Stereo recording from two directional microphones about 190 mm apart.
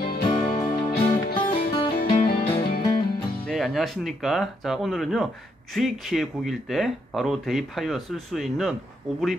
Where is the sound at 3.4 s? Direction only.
Centre (ahead or behind).